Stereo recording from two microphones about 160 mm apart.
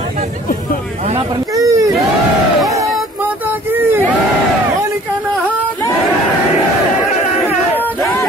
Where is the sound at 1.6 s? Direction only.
20° right (ahead or behind).